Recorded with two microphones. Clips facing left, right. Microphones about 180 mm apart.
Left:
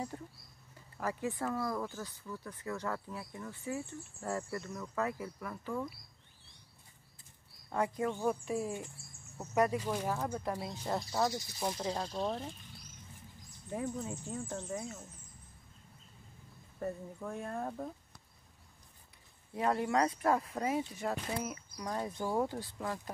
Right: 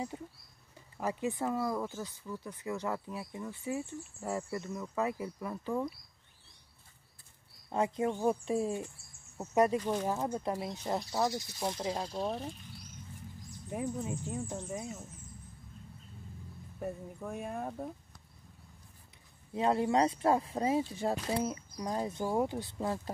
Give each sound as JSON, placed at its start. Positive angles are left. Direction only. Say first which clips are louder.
{"t": 0.1, "sound": "speech", "louder": "right 2 dB", "side_deg": -10}
{"t": 7.7, "sound": "speech", "louder": "right 2 dB", "side_deg": -20}
{"t": 13.7, "sound": "speech", "louder": "right 2 dB", "side_deg": -15}
{"t": 16.8, "sound": "speech", "louder": "even", "side_deg": -10}
{"t": 19.5, "sound": "speech", "louder": "right 3 dB", "side_deg": -25}